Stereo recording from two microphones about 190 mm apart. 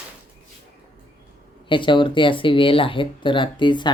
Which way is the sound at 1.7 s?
25° left (ahead or behind).